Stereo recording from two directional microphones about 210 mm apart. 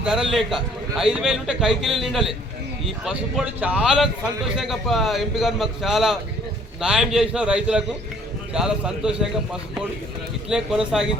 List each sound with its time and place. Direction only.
0.0 s a man's voice: centre (ahead or behind)